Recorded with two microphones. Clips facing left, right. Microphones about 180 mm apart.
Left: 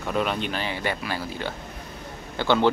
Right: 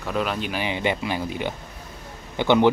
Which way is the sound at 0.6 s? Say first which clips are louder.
Right 4 dB; 20° right (ahead or behind).